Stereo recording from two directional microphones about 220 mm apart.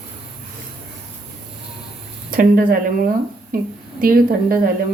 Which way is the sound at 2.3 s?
40° right (ahead or behind).